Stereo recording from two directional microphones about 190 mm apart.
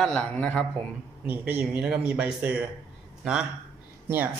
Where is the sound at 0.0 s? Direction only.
5° left (ahead or behind).